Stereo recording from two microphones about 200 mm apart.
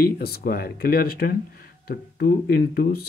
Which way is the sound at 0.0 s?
50° left (ahead or behind).